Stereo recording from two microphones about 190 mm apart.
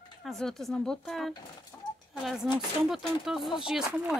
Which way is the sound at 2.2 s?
Centre (ahead or behind).